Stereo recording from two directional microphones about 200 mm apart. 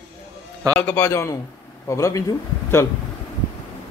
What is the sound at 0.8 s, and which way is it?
A man's voice, 10° left (ahead or behind).